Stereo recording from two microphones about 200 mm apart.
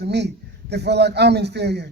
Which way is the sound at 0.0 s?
55° right (ahead or behind).